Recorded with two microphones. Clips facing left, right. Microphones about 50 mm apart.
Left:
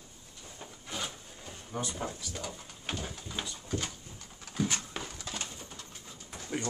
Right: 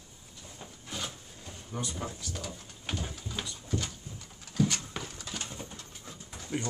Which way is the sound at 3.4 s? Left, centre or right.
Left.